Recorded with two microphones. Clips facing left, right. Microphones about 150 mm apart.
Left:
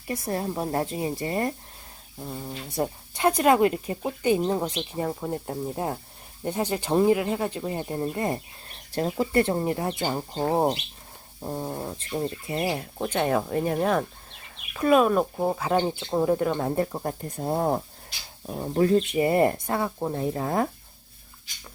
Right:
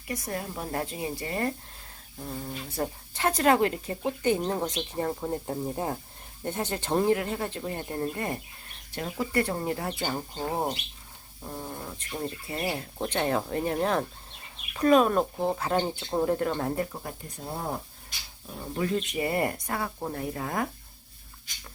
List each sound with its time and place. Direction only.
0.1 s speech: 30° left (ahead or behind)
2.2 s speech: 15° left (ahead or behind)
8.1 s speech: 25° left (ahead or behind)
8.9 s speech: 35° left (ahead or behind)
10.3 s speech: 35° left (ahead or behind); by 12.8 s 20° left (ahead or behind)
13.0 s speech: 10° left (ahead or behind)
16.7 s speech: 35° left (ahead or behind); by 17.7 s 50° left (ahead or behind)
18.4 s speech: 40° left (ahead or behind)